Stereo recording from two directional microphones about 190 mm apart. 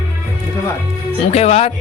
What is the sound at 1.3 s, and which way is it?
Speech, 35° left (ahead or behind).